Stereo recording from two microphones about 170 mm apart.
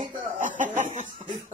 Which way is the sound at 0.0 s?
50° right (ahead or behind).